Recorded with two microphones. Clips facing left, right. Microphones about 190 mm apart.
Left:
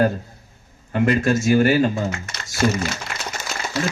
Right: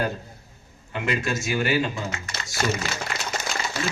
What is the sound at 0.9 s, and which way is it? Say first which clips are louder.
Speech: left 8 dB; 40° left (ahead or behind).